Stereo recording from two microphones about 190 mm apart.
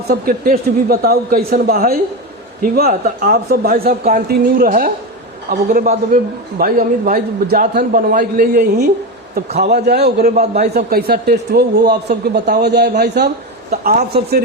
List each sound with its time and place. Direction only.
0.1 s a man's voice: 50° right (ahead or behind)
10.3 s a woman's voice: 35° right (ahead or behind)
10.6 s speech: 55° right (ahead or behind)
13.7 s a woman's voice: 40° right (ahead or behind)